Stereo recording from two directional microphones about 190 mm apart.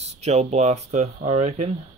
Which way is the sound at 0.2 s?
35° right (ahead or behind).